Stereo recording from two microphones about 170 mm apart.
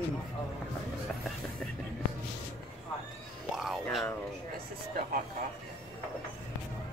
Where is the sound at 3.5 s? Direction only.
Centre (ahead or behind).